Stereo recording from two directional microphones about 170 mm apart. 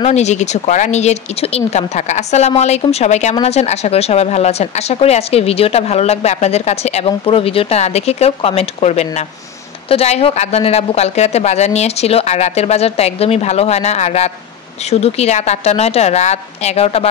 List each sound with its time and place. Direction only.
0.0 s a woman's voice: 40° left (ahead or behind)